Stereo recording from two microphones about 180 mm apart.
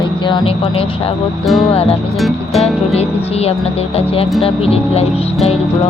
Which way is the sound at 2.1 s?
Centre (ahead or behind).